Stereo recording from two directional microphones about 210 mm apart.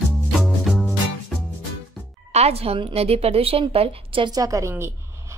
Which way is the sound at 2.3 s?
30° right (ahead or behind).